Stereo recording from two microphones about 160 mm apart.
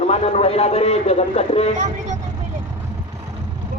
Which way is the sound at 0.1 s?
40° left (ahead or behind).